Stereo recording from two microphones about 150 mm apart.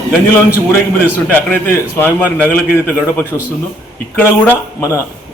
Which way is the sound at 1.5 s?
15° left (ahead or behind).